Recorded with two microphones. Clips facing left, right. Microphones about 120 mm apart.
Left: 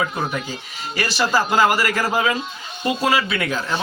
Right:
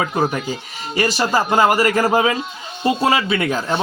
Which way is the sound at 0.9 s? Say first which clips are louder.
Right 2 dB; 25° right (ahead or behind).